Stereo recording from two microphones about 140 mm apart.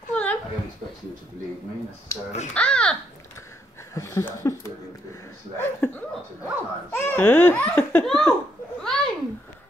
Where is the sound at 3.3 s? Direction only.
20° left (ahead or behind).